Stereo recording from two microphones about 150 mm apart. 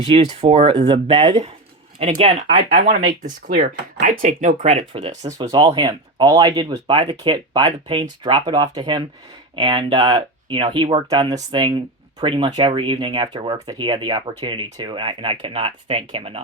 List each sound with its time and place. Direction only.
0.0 s speech: 40° right (ahead or behind)
2.8 s speech: 55° right (ahead or behind)
4.9 s speech: 35° right (ahead or behind)